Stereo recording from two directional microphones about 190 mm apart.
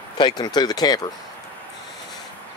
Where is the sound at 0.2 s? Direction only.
20° left (ahead or behind).